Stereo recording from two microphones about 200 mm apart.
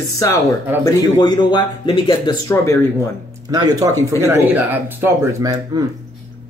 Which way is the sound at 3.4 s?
20° right (ahead or behind).